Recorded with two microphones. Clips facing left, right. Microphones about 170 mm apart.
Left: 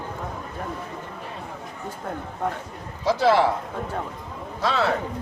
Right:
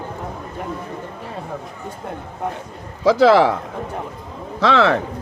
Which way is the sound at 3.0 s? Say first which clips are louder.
Right 7 dB; 90° right.